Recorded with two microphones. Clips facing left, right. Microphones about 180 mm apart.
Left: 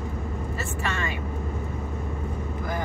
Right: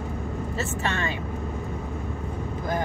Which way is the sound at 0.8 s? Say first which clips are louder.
Even; 30° right (ahead or behind).